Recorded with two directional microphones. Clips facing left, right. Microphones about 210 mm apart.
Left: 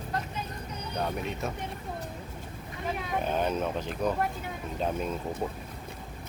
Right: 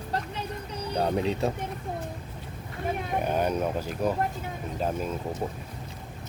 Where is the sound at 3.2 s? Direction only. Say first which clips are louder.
Right 2 dB; 10° right (ahead or behind).